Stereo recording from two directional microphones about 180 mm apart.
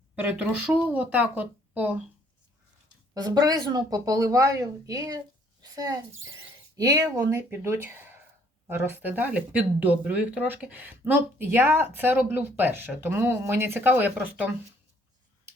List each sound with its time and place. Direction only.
0.2 s speech: 10° right (ahead or behind)
3.2 s a child's voice: 20° right (ahead or behind)